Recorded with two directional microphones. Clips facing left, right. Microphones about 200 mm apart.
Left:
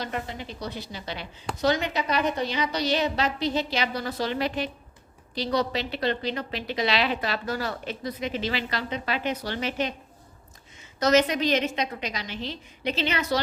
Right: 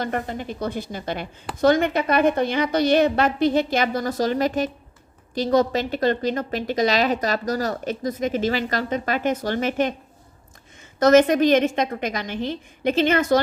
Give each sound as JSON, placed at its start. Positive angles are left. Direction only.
{"t": 0.0, "sound": "a woman's voice", "side_deg": -50}
{"t": 11.0, "sound": "a woman's voice", "side_deg": -50}